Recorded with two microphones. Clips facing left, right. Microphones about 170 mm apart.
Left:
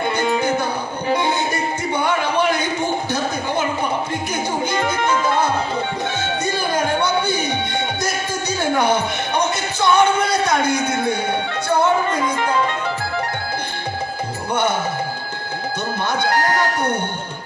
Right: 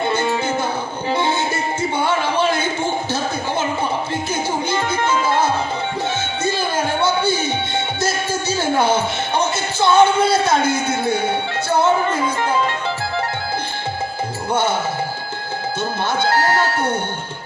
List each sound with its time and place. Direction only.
0.0 s music: 15° left (ahead or behind)
2.0 s music: 15° left (ahead or behind)
4.7 s music: 25° right (ahead or behind)
6.4 s music: 15° left (ahead or behind)
8.5 s music: 25° right (ahead or behind)
16.2 s music: 25° right (ahead or behind)